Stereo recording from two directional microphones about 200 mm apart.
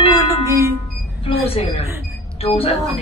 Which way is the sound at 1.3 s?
25° left (ahead or behind).